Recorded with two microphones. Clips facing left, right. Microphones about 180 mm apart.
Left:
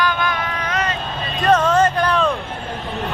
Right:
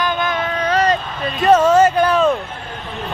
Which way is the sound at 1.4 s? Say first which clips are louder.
Right 4 dB; 10° right (ahead or behind).